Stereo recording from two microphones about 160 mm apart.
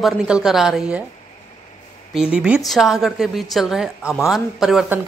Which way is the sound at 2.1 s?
5° right (ahead or behind).